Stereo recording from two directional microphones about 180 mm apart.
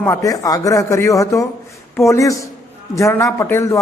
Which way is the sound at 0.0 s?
15° left (ahead or behind).